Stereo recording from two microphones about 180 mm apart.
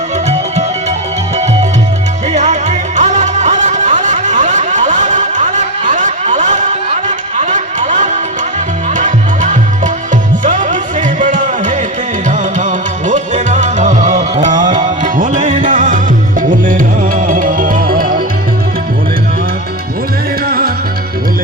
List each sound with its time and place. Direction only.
0.3 s music: 40° right (ahead or behind)
2.3 s music: 40° right (ahead or behind)